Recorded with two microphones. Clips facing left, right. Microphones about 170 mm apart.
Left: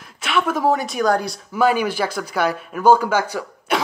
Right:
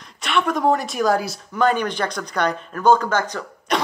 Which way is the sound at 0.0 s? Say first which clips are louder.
Even; centre (ahead or behind).